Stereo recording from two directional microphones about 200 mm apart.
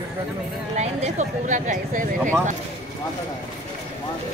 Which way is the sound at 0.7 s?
35° right (ahead or behind).